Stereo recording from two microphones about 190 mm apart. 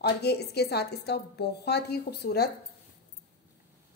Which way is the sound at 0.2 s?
60° left (ahead or behind).